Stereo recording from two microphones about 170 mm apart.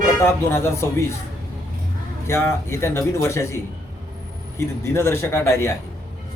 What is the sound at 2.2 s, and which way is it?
Speech, 15° left (ahead or behind).